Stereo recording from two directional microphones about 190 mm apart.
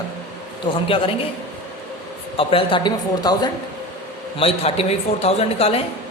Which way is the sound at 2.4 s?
30° left (ahead or behind).